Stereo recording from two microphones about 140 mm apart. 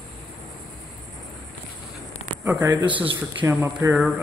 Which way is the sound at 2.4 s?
15° right (ahead or behind).